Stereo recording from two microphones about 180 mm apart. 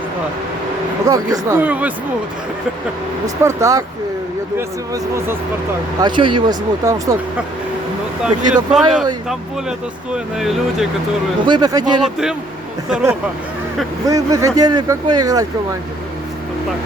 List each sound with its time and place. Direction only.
1.0 s speech: 20° right (ahead or behind)
3.2 s speech: 20° right (ahead or behind)
5.1 s speech: 15° right (ahead or behind)
6.0 s speech: 25° right (ahead or behind)
8.2 s speech: 5° right (ahead or behind)
10.3 s speech: centre (ahead or behind)
11.4 s speech: 25° right (ahead or behind)
12.9 s speech: 15° right (ahead or behind)